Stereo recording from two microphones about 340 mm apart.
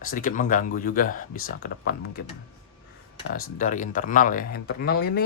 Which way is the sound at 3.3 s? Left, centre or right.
Left.